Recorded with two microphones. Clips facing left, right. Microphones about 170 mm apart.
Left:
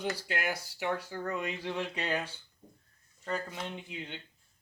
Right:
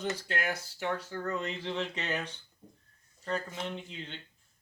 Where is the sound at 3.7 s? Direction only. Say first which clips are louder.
Even; 10° left (ahead or behind).